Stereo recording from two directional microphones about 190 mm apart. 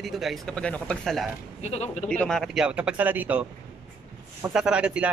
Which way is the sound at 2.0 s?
5° left (ahead or behind).